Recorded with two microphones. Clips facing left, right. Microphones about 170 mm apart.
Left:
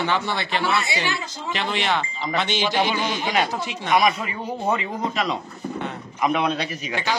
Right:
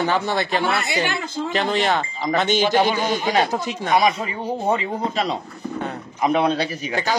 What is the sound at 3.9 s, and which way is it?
Speech, 30° right (ahead or behind).